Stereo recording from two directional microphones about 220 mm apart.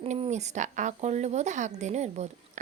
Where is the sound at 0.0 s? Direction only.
30° right (ahead or behind).